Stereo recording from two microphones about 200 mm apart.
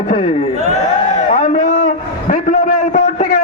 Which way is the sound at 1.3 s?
40° left (ahead or behind).